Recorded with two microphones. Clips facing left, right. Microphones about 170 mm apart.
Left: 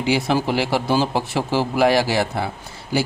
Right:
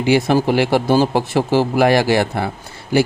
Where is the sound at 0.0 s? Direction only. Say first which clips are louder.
Right 5 dB; 55° right (ahead or behind).